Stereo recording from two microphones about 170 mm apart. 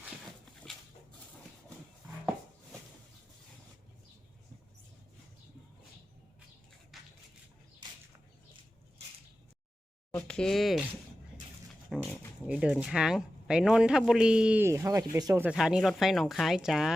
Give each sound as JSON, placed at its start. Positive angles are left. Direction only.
{"t": 6.9, "sound": "a sound", "side_deg": 0}
{"t": 10.2, "sound": "a man's voice", "side_deg": 5}
{"t": 11.9, "sound": "a man's voice", "side_deg": -5}
{"t": 15.4, "sound": "a man's voice", "side_deg": -5}